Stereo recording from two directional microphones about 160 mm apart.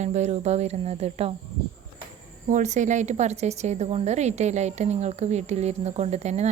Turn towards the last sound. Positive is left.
turn(degrees=-45)  # may be behind; listen again after turning